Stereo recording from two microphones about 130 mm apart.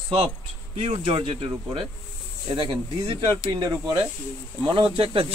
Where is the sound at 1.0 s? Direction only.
45° right (ahead or behind).